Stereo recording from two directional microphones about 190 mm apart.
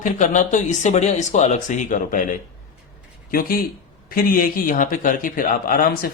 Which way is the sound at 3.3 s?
50° left (ahead or behind).